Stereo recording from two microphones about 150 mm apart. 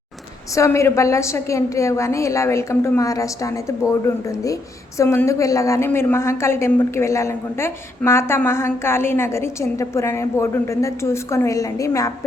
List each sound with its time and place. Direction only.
0.5 s a woman's voice: 20° left (ahead or behind)